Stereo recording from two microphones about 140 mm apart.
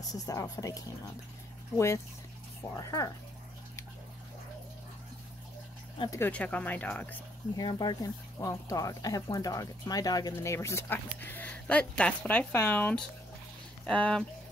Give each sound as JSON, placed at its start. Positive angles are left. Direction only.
{"t": 0.1, "sound": "speech", "side_deg": 25}
{"t": 2.7, "sound": "speech", "side_deg": 20}
{"t": 6.0, "sound": "speech", "side_deg": 15}
{"t": 7.5, "sound": "speech", "side_deg": 30}